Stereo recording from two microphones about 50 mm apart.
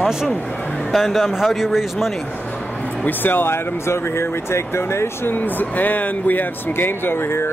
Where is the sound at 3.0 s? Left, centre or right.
Left.